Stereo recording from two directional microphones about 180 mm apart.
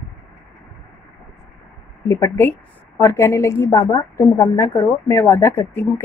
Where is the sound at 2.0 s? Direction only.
15° left (ahead or behind).